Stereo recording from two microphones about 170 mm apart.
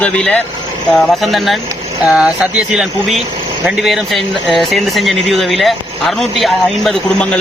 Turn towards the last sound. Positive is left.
turn(degrees=5)  # may be behind; listen again after turning